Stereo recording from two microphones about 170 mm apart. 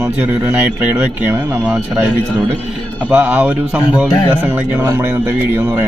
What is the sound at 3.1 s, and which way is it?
A man's voice, 10° right (ahead or behind).